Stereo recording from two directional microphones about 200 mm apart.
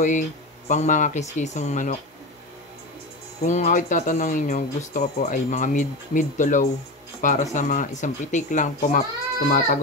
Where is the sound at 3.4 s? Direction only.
35° left (ahead or behind).